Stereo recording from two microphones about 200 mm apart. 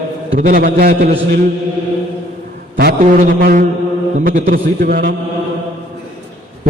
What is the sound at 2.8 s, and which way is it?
A man's voice, 50° right (ahead or behind).